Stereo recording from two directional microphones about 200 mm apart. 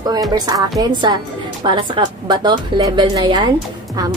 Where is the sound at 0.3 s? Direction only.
15° right (ahead or behind).